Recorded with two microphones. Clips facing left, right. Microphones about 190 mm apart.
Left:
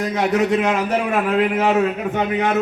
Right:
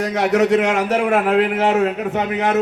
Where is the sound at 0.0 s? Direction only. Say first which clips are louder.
Right 2 dB; 80° right.